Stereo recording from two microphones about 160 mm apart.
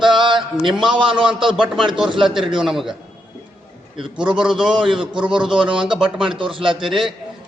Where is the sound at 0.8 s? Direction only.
30° right (ahead or behind).